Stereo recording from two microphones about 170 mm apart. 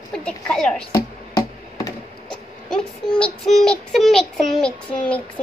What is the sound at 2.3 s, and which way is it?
A child's voice, 5° left (ahead or behind).